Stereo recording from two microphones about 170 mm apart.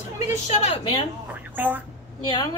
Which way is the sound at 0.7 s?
30° left (ahead or behind).